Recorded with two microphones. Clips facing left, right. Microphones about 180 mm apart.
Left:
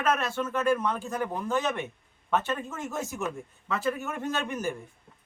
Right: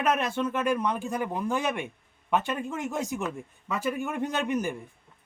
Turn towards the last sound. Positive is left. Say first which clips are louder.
# right 2 dB
turn(degrees=-15)  # may be behind; listen again after turning